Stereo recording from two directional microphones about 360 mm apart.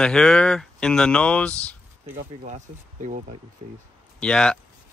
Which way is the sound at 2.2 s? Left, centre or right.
Centre.